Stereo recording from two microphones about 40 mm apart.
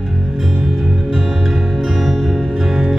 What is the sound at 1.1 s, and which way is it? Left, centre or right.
Music, centre.